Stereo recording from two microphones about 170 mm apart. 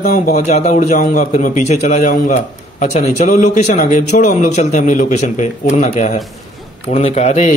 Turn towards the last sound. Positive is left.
turn(degrees=40)  # may be behind; listen again after turning